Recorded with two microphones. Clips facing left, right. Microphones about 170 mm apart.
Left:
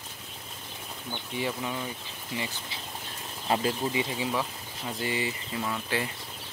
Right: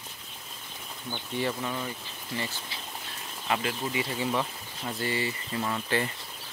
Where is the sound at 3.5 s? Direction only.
30° left (ahead or behind).